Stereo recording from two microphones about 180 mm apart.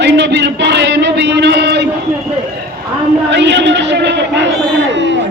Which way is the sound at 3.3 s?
75° right (ahead or behind).